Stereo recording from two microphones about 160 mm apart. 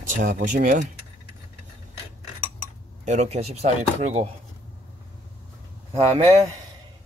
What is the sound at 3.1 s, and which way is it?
A man's voice, 45° right (ahead or behind).